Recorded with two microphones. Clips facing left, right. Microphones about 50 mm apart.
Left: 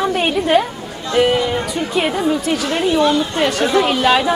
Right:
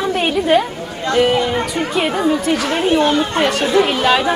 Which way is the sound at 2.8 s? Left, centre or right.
Right.